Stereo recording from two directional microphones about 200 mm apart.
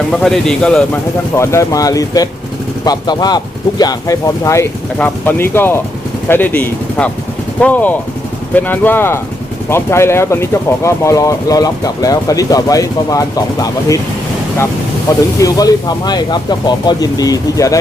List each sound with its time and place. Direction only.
0.1 s speech: centre (ahead or behind)
1.4 s speech: 15° left (ahead or behind)
15.4 s speech: 20° left (ahead or behind)